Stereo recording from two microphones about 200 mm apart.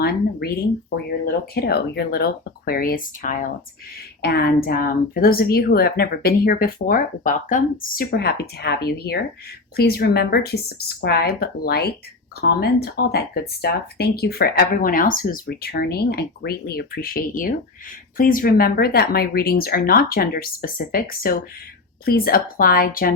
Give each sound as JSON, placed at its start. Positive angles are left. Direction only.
{"t": 0.0, "sound": "speech", "side_deg": 50}